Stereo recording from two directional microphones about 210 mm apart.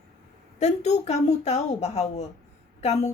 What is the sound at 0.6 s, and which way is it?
A woman's voice, 30° left (ahead or behind).